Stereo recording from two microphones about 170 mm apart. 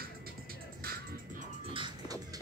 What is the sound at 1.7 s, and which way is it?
Music, 30° right (ahead or behind).